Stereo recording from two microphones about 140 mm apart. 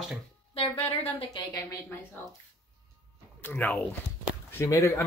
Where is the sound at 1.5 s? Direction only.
25° left (ahead or behind).